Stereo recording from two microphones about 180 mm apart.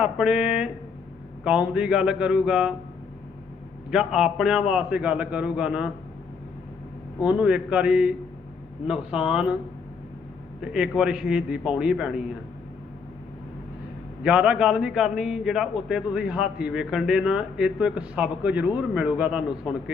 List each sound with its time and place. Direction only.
0.0 s a man's voice: 5° right (ahead or behind)
3.9 s a man's voice: centre (ahead or behind)
7.2 s a man's voice: 5° right (ahead or behind)
10.6 s a man's voice: 5° right (ahead or behind)
14.3 s a man's voice: 5° right (ahead or behind)